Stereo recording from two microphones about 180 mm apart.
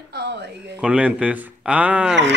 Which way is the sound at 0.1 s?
70° right (ahead or behind).